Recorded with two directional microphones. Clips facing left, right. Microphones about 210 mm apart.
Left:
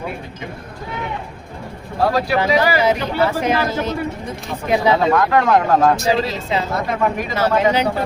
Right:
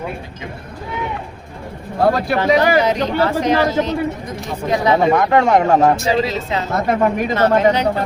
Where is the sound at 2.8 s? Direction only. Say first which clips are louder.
Right 1 dB; 10° left (ahead or behind).